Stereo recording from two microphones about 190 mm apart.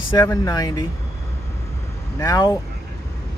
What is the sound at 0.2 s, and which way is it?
Speech, 20° left (ahead or behind).